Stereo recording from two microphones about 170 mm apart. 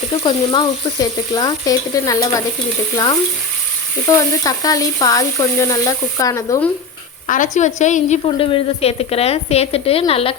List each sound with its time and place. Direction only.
0.2 s speech: 25° left (ahead or behind)
7.3 s a woman's voice: 50° left (ahead or behind)
8.4 s a woman's voice: 30° left (ahead or behind)